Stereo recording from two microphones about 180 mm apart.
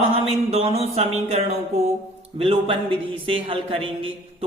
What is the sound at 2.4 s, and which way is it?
A woman's voice, 30° right (ahead or behind).